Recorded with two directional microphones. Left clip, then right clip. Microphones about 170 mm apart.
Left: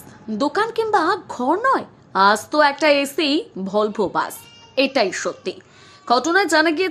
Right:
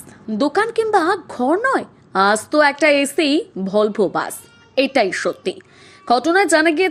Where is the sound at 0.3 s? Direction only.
10° right (ahead or behind).